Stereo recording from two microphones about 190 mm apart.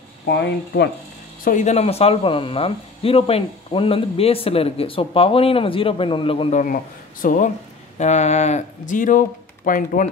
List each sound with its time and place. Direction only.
1.4 s speech: 40° left (ahead or behind)
6.6 s speech: 45° left (ahead or behind)